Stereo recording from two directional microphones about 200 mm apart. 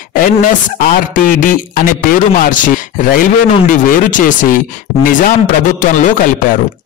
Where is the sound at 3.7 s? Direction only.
40° left (ahead or behind).